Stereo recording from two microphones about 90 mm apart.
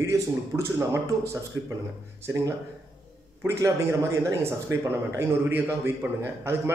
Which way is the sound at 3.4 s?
35° right (ahead or behind).